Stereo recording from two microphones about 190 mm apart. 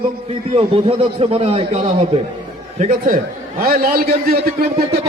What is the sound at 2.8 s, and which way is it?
A man's voice, 45° right (ahead or behind).